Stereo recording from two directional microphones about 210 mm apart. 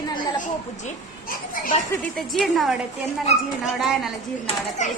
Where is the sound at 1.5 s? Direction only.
40° left (ahead or behind).